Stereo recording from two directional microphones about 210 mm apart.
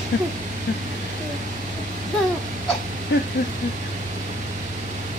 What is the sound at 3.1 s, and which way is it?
Speech, 55° left (ahead or behind).